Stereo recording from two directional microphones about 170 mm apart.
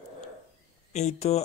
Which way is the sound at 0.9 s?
40° left (ahead or behind).